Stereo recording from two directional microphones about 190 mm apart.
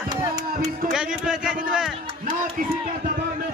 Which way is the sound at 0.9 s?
5° right (ahead or behind).